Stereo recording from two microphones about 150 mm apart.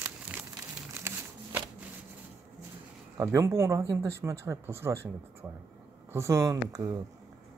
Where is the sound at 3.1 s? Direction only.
20° right (ahead or behind).